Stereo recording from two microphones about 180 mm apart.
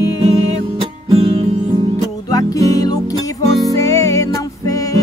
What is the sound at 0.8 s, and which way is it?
Music, 25° right (ahead or behind).